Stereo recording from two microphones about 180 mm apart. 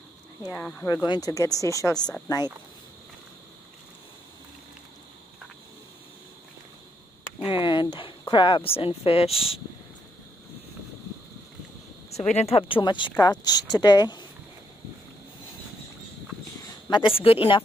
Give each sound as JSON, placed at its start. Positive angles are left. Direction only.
{"t": 0.6, "sound": "speech", "side_deg": 5}
{"t": 0.8, "sound": "speech", "side_deg": 20}
{"t": 7.3, "sound": "a sound", "side_deg": 30}
{"t": 12.4, "sound": "speech", "side_deg": 35}
{"t": 16.9, "sound": "speech", "side_deg": 30}